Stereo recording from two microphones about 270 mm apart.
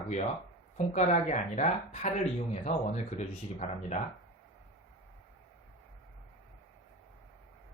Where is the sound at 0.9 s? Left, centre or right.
Left.